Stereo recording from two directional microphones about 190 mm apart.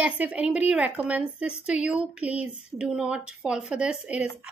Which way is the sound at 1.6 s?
5° right (ahead or behind).